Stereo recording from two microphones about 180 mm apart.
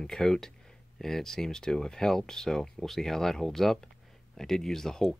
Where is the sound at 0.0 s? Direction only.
5° left (ahead or behind).